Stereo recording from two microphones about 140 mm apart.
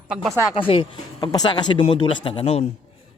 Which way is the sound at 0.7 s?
40° left (ahead or behind).